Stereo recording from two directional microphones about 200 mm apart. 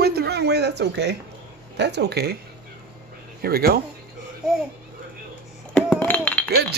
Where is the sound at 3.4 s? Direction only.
50° right (ahead or behind).